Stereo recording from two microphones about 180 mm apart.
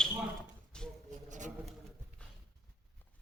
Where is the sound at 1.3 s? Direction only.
45° right (ahead or behind).